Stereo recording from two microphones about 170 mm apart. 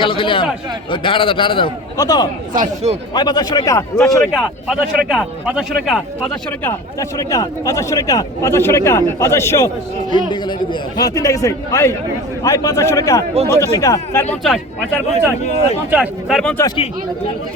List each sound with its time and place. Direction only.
0.0 s a man's voice: 30° left (ahead or behind)
2.6 s speech: 40° right (ahead or behind)
3.2 s speech: 25° left (ahead or behind)
4.2 s a man's voice: centre (ahead or behind)
6.7 s a man's voice: 20° left (ahead or behind)
10.1 s a man's voice: 25° left (ahead or behind)
14.4 s a man's voice: centre (ahead or behind)
15.9 s speech: 5° right (ahead or behind)